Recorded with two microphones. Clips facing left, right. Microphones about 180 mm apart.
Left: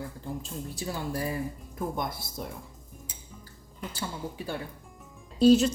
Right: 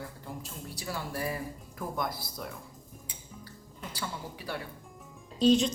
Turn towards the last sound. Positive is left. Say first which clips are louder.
# left 4 dB
turn(degrees=5)  # may be behind; listen again after turning